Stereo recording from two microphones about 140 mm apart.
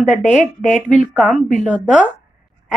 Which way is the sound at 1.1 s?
5° right (ahead or behind).